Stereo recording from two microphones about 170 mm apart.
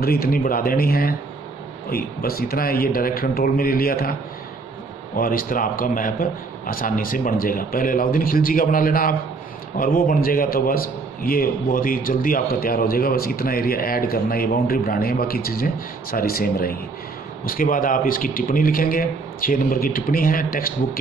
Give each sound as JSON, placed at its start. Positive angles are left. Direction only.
{"t": 0.0, "sound": "a man's voice", "side_deg": 60}